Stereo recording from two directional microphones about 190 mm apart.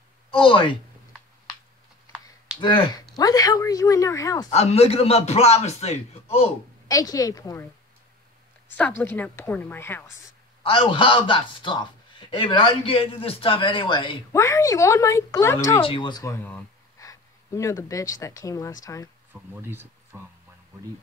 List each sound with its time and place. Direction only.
0.3 s a man's voice: 30° left (ahead or behind)
2.6 s a man's voice: 25° left (ahead or behind)
4.5 s a man's voice: 35° left (ahead or behind)
6.9 s a man's voice: 20° left (ahead or behind)
8.7 s speech: 10° left (ahead or behind)
10.6 s a man's voice: 30° left (ahead or behind)
14.3 s speech: 15° left (ahead or behind)
15.8 s a man's voice: 25° left (ahead or behind)
19.5 s speech: 10° right (ahead or behind)